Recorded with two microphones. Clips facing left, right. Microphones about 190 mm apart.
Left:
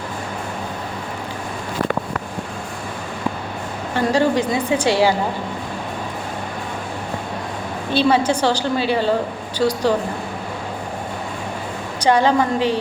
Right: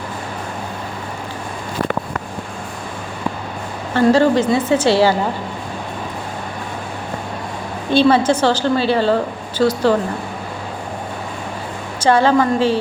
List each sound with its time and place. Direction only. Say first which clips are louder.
3.9 s a woman's voice: right 5 dB; 15° left (ahead or behind)
8.3 s a woman's voice: right 3 dB; 15° left (ahead or behind)
11.9 s a woman's voice: right 2 dB; 15° left (ahead or behind)